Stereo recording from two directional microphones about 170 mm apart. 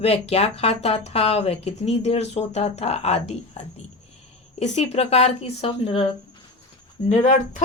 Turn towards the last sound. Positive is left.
turn(degrees=45)  # may be behind; listen again after turning